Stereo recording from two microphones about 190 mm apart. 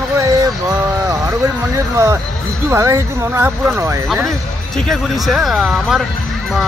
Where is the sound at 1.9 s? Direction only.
15° right (ahead or behind).